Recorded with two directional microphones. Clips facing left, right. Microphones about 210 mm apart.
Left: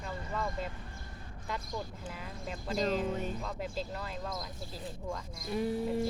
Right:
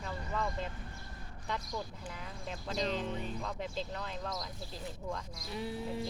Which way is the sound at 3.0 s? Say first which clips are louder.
Left 4 dB; 45° left (ahead or behind).